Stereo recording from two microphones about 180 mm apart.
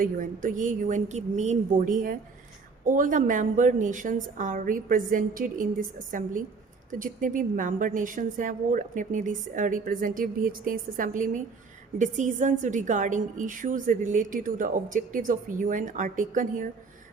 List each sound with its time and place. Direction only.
0.0 s a woman's voice: 50° right (ahead or behind)